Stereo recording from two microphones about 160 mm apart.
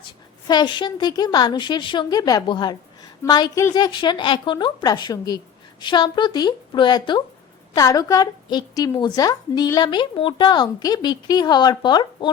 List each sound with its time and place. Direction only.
0.0 s a woman's voice: 25° left (ahead or behind)